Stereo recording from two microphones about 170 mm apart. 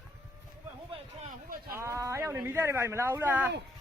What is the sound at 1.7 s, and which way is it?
Speech, 15° right (ahead or behind).